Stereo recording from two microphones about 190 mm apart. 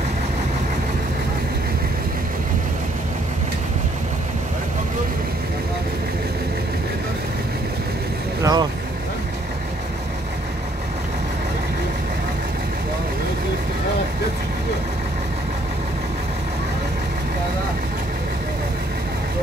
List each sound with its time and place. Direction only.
8.4 s vehicle: 20° right (ahead or behind)